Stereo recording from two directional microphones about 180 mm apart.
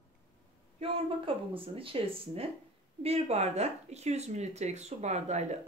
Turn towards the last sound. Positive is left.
turn(degrees=-40)  # may be behind; listen again after turning